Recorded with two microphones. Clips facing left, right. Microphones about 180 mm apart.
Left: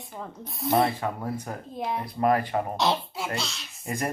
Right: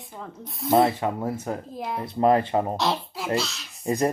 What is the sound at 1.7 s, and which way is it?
Speech, centre (ahead or behind).